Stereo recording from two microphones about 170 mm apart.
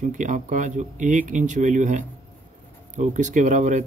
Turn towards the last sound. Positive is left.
turn(degrees=-45)  # may be behind; listen again after turning